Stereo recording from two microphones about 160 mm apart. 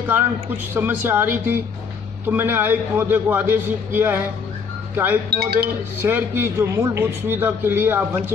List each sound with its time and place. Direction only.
0.7 s a man's voice: 15° right (ahead or behind)
5.3 s speech: 75° right (ahead or behind)
5.9 s a man's voice: 15° right (ahead or behind)